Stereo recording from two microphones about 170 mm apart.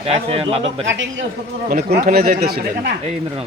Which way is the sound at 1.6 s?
60° right (ahead or behind).